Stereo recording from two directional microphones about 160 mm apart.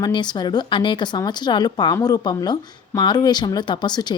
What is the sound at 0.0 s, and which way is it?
Speech, 25° left (ahead or behind).